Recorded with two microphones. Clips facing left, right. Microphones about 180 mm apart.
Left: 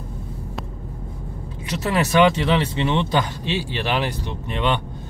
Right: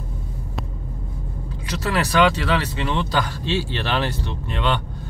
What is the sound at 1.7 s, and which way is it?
Speech, 20° left (ahead or behind).